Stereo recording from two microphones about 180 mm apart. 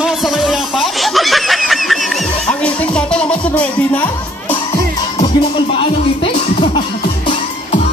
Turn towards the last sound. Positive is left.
turn(degrees=30)  # may be behind; listen again after turning